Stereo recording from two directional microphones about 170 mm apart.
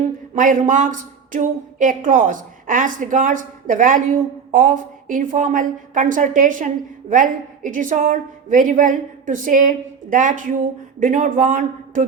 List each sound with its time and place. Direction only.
0.0 s a woman's voice: 50° right (ahead or behind)